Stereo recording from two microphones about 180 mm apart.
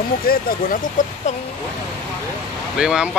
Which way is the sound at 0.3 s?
55° left (ahead or behind).